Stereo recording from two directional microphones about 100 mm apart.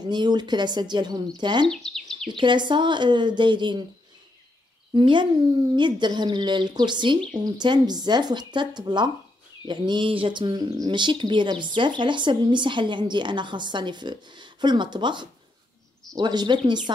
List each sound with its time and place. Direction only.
0.0 s speech: 45° right (ahead or behind)
1.7 s speech: 5° left (ahead or behind)
2.3 s speech: 50° right (ahead or behind)
4.9 s speech: 50° right (ahead or behind)